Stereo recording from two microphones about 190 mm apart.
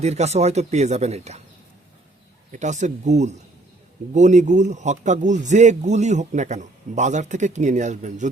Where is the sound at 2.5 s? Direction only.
40° right (ahead or behind).